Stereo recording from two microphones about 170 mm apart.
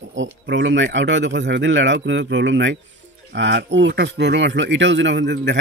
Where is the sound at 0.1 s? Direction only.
90° right.